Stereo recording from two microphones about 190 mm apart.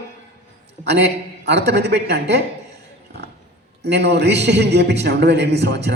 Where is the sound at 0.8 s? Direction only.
60° right (ahead or behind).